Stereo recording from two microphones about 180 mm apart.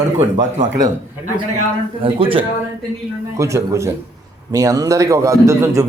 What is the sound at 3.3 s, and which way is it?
A man's voice, 15° right (ahead or behind).